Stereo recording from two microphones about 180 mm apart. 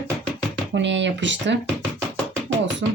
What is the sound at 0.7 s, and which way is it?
Speech, 85° right.